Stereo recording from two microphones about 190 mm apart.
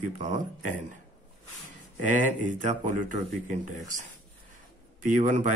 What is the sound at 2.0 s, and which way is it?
Speech, 45° right (ahead or behind).